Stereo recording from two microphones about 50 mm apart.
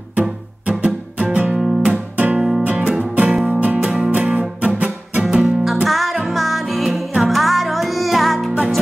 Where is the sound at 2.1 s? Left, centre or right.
Right.